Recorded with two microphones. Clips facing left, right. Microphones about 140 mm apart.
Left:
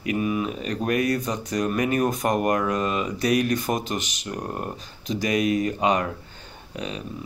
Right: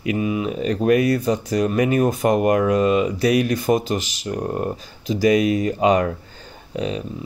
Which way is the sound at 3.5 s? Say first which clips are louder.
Right 6 dB; 35° right (ahead or behind).